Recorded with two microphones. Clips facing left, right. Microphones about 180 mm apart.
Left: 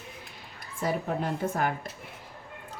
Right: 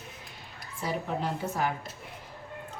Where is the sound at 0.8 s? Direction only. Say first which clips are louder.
Left 2 dB; 50° left (ahead or behind).